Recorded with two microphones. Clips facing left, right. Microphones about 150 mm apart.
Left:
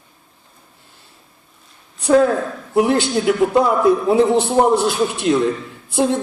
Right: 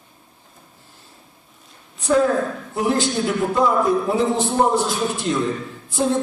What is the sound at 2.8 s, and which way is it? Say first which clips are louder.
A man's voice: left 5 dB; 65° left (ahead or behind).